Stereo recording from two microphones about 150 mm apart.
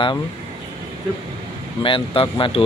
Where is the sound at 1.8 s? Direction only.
35° left (ahead or behind).